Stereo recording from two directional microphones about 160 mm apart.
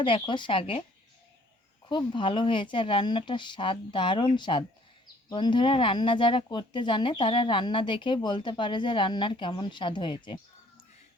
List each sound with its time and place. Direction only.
0.0 s speech: 30° left (ahead or behind)
1.9 s speech: 30° left (ahead or behind)